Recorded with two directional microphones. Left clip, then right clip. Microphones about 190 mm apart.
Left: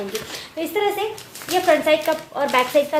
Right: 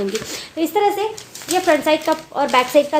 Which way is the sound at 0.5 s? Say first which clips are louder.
Right 4 dB; 40° right (ahead or behind).